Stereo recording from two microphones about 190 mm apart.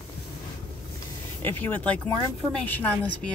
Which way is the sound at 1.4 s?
10° left (ahead or behind).